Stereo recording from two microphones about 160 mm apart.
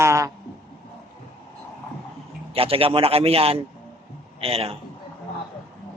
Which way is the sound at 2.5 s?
35° right (ahead or behind).